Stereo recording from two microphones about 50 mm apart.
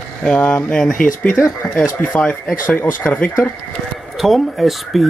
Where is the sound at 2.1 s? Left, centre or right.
Left.